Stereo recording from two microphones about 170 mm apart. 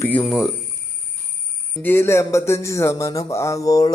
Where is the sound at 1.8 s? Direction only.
15° left (ahead or behind).